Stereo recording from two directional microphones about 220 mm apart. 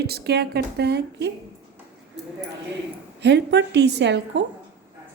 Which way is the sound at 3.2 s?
50° right (ahead or behind).